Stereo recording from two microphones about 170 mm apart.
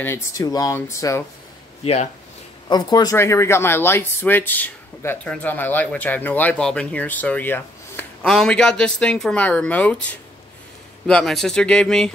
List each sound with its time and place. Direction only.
0.0 s speech: 20° left (ahead or behind)
2.7 s speech: 25° left (ahead or behind)
11.1 s speech: 5° left (ahead or behind)